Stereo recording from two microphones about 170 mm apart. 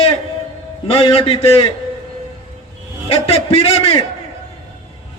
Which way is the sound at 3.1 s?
35° left (ahead or behind).